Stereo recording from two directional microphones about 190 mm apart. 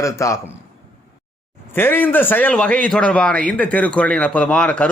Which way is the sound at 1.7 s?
10° left (ahead or behind).